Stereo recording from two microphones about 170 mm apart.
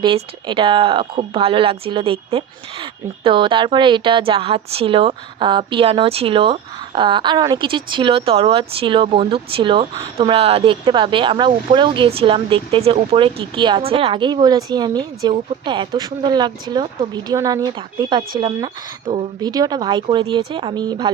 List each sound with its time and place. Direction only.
0.0 s speech: 30° right (ahead or behind)